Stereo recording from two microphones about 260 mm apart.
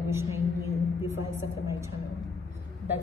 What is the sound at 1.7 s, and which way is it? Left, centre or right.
Speech, centre.